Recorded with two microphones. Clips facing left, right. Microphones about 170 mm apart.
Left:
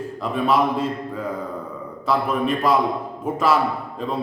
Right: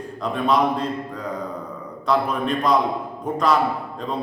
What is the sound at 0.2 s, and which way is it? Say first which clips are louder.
Speech: even; 5° left (ahead or behind).